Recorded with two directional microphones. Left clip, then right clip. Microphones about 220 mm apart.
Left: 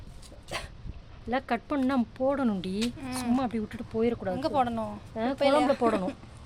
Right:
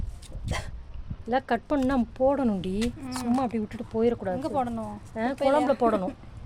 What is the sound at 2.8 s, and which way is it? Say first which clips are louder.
Speech: right 1 dB; centre (ahead or behind).